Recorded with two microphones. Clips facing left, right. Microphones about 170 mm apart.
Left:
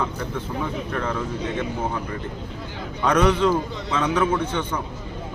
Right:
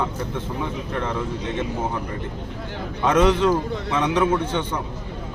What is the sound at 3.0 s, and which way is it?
Speech, 25° right (ahead or behind).